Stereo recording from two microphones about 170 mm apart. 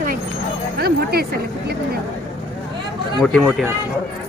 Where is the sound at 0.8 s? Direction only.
65° right (ahead or behind).